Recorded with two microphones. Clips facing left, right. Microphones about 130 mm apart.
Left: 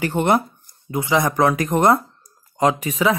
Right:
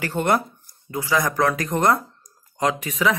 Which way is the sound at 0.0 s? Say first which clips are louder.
Left 3 dB; 20° left (ahead or behind).